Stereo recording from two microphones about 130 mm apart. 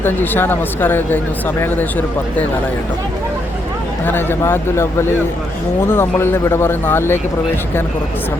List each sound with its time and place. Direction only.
0.0 s speech: 15° left (ahead or behind)
4.0 s speech: 15° left (ahead or behind)